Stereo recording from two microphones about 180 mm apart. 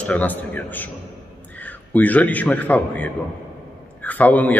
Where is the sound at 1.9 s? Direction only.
10° left (ahead or behind).